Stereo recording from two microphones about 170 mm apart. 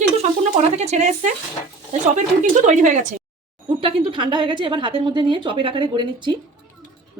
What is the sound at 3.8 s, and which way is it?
A woman's voice, 30° right (ahead or behind).